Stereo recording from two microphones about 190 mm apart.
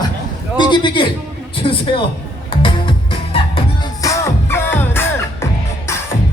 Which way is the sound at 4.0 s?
15° left (ahead or behind).